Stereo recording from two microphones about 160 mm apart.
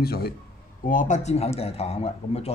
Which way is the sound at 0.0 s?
75° left (ahead or behind).